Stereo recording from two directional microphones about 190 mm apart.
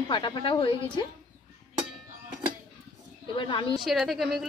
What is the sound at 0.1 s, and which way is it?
Speech, 25° left (ahead or behind).